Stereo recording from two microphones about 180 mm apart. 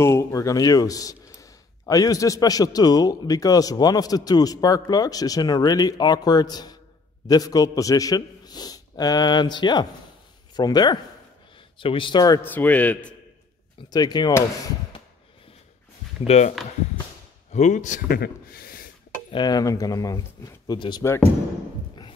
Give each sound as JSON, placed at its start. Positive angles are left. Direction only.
{"t": 0.0, "sound": "speech", "side_deg": 15}
{"t": 12.4, "sound": "a man's voice", "side_deg": 10}
{"t": 13.8, "sound": "speech", "side_deg": 20}
{"t": 16.3, "sound": "speech", "side_deg": 35}
{"t": 19.3, "sound": "speech", "side_deg": 20}